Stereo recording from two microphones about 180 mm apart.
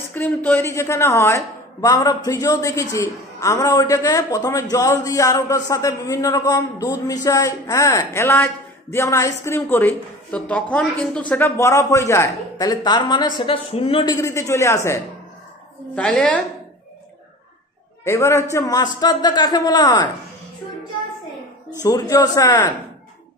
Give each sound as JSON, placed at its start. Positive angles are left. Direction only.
{"t": 0.1, "sound": "a woman's voice", "side_deg": 10}
{"t": 14.1, "sound": "a woman's voice", "side_deg": 15}
{"t": 15.9, "sound": "a woman's voice", "side_deg": 5}
{"t": 18.0, "sound": "a man's voice", "side_deg": 15}
{"t": 21.8, "sound": "a man's voice", "side_deg": 20}